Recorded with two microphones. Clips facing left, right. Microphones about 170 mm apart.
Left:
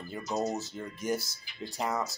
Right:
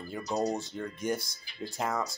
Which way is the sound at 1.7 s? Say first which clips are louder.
Even; centre (ahead or behind).